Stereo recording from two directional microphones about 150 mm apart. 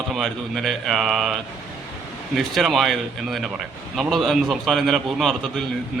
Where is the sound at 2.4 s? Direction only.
Centre (ahead or behind).